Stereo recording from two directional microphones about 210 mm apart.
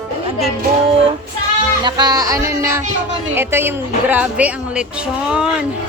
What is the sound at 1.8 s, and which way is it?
Speech, 20° right (ahead or behind).